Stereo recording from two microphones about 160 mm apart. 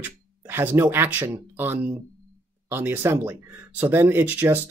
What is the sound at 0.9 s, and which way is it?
Speech, 15° right (ahead or behind).